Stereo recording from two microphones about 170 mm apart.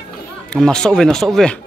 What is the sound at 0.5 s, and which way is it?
Speech, 5° left (ahead or behind).